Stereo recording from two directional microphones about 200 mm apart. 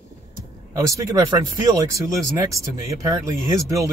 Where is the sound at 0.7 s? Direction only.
15° right (ahead or behind).